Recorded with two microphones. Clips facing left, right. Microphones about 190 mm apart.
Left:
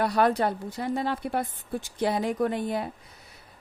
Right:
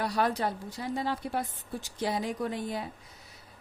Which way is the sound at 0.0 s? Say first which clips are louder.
Left 5 dB; 60° left (ahead or behind).